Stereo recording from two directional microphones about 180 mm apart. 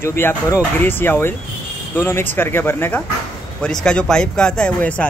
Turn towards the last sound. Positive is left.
turn(degrees=5)  # may be behind; listen again after turning